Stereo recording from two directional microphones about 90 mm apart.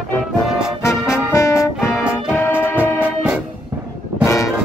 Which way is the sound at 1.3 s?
35° left (ahead or behind).